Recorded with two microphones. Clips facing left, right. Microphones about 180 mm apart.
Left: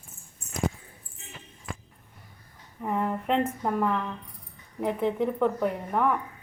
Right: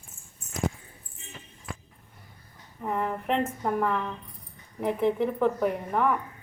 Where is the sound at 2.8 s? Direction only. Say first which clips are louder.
Left 1 dB; 5° left (ahead or behind).